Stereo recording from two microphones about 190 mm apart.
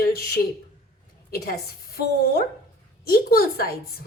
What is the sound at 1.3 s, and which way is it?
A woman's voice, 50° left (ahead or behind).